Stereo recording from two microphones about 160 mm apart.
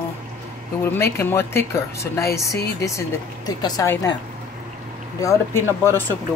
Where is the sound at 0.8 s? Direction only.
15° left (ahead or behind).